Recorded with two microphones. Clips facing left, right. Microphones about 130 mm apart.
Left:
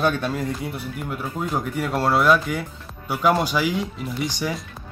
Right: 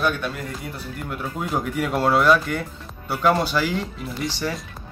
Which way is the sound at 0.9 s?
Centre (ahead or behind).